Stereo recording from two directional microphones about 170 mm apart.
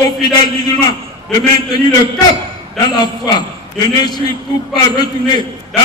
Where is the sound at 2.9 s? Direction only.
25° left (ahead or behind).